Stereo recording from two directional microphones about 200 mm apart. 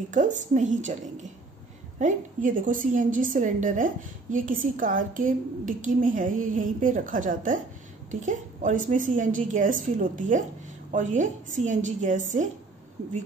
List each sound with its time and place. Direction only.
0.1 s a woman's voice: 40° right (ahead or behind)
2.0 s a woman's voice: 40° right (ahead or behind)